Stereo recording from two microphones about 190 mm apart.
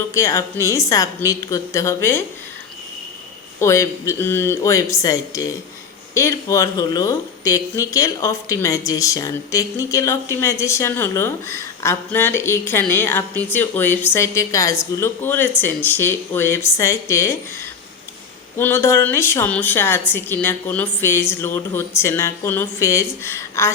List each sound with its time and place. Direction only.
0.1 s speech: 15° left (ahead or behind)
3.6 s speech: 15° left (ahead or behind)
18.5 s speech: 15° left (ahead or behind)